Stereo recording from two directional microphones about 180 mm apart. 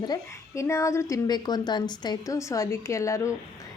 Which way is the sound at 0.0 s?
20° left (ahead or behind).